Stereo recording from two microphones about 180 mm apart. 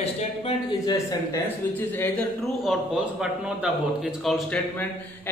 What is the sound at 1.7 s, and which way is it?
Speech, 10° left (ahead or behind).